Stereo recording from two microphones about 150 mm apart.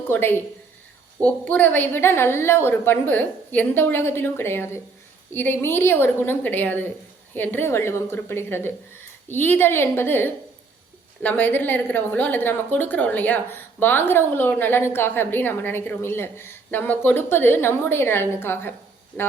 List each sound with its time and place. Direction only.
0.1 s a woman's voice: 15° left (ahead or behind)